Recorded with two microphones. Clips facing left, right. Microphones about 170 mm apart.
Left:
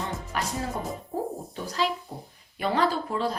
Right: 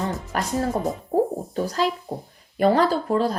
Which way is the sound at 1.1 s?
40° right (ahead or behind).